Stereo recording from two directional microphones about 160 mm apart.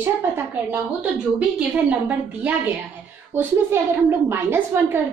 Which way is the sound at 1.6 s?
10° right (ahead or behind).